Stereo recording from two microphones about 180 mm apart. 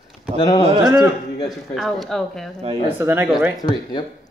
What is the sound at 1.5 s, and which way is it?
Speech, centre (ahead or behind).